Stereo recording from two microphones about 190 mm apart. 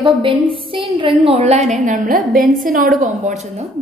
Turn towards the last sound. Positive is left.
turn(degrees=-35)  # may be behind; listen again after turning